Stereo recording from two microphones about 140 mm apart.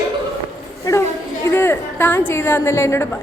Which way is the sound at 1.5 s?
15° left (ahead or behind).